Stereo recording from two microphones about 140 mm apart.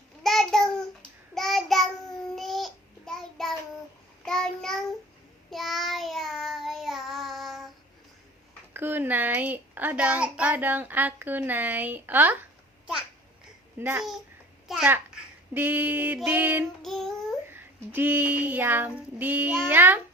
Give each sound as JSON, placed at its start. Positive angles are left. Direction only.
{"t": 0.2, "sound": "child singing", "side_deg": 0}
{"t": 8.7, "sound": "a woman's voice", "side_deg": -15}
{"t": 13.7, "sound": "a child's voice", "side_deg": -15}
{"t": 16.8, "sound": "child singing", "side_deg": 5}
{"t": 17.5, "sound": "child singing", "side_deg": -15}